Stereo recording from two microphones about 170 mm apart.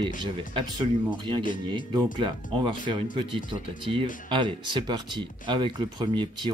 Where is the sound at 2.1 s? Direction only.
25° right (ahead or behind).